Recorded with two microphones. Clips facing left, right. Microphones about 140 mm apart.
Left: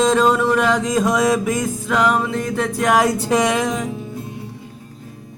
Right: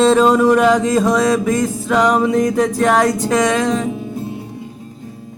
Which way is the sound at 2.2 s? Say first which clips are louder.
Right 7 dB; 15° right (ahead or behind).